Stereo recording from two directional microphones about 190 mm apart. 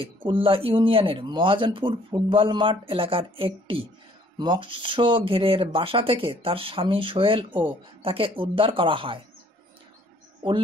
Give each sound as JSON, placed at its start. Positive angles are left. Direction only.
{"t": 0.0, "sound": "speech", "side_deg": -25}